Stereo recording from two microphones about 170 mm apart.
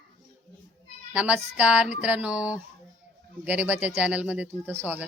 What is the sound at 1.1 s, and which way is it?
Speech, 10° right (ahead or behind).